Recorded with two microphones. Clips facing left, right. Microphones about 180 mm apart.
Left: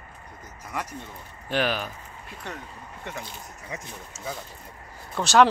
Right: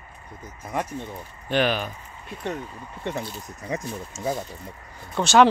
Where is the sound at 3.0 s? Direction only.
30° right (ahead or behind).